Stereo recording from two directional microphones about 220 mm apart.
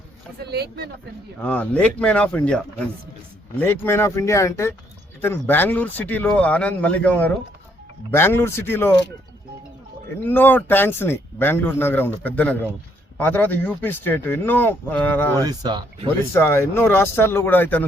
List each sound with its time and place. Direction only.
0.4 s speech: 50° right (ahead or behind)
1.4 s speech: 5° left (ahead or behind)
3.6 s speech: 10° left (ahead or behind)
10.2 s speech: 10° left (ahead or behind)
15.4 s speech: 20° right (ahead or behind)
16.3 s speech: 10° left (ahead or behind)